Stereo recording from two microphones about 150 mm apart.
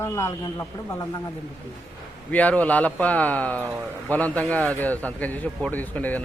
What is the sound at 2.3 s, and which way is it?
A man's voice, 10° left (ahead or behind).